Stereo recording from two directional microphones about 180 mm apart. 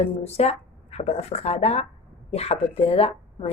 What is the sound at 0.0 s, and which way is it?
Speech, 35° left (ahead or behind).